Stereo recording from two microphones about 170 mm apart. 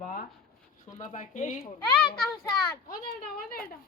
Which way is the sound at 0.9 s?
45° left (ahead or behind).